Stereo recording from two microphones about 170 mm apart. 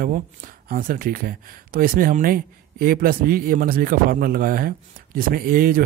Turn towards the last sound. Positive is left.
turn(degrees=-60)  # may be behind; listen again after turning